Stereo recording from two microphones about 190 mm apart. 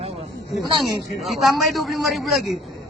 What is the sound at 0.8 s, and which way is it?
A man's voice, centre (ahead or behind).